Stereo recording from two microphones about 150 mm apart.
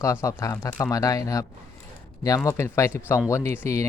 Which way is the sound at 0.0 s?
20° left (ahead or behind).